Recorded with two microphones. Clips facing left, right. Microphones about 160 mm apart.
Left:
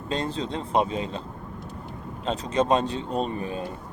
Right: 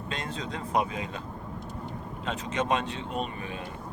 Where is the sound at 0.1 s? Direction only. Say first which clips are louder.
Left 8 dB; 30° left (ahead or behind).